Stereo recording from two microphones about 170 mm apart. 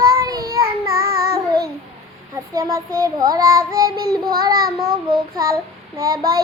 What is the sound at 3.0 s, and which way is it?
Child singing, 20° right (ahead or behind).